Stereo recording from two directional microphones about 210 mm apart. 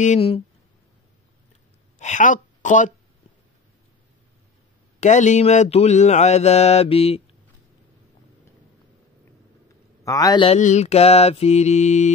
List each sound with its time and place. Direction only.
0.0 s mantra: 30° left (ahead or behind)
2.0 s a woman's voice: 35° left (ahead or behind)
5.0 s mantra: 35° left (ahead or behind)
10.0 s mantra: 15° left (ahead or behind); by 12.1 s 35° left (ahead or behind)